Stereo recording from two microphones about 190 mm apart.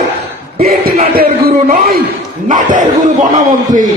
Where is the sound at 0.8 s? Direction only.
50° right (ahead or behind).